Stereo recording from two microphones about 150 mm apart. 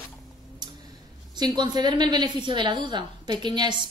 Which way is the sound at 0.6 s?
30° right (ahead or behind).